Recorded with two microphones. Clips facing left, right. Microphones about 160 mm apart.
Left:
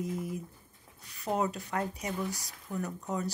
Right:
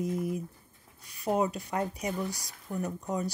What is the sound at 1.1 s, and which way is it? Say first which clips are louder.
Speech: right 3 dB; 15° right (ahead or behind).